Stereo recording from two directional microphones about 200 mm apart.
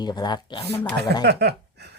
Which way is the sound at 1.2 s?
55° right (ahead or behind).